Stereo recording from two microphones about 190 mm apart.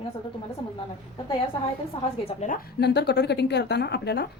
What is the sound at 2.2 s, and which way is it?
A woman's voice, 40° left (ahead or behind).